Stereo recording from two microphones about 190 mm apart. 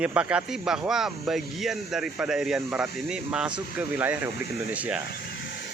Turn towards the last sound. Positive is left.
turn(degrees=55)  # may be behind; listen again after turning